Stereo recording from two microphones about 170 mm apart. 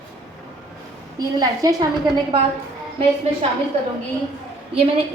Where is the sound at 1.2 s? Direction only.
20° right (ahead or behind).